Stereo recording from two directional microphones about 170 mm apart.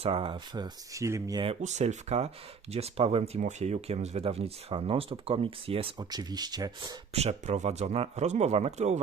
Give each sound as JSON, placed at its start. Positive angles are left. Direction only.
{"t": 0.0, "sound": "speech", "side_deg": -35}
{"t": 1.5, "sound": "speech", "side_deg": -40}
{"t": 7.1, "sound": "speech", "side_deg": -40}